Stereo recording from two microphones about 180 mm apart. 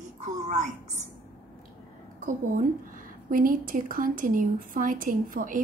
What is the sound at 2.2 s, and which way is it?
A woman's voice, 50° right (ahead or behind).